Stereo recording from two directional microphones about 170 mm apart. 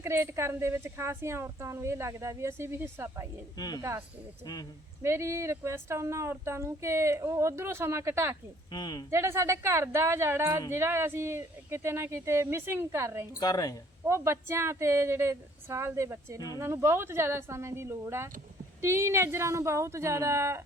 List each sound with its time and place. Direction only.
0.0 s speech: 15° right (ahead or behind)
5.0 s speech: 15° right (ahead or behind)
8.7 s speech: 25° left (ahead or behind)
9.0 s speech: 15° right (ahead or behind)
13.4 s speech: 20° left (ahead or behind)
14.0 s speech: 15° right (ahead or behind)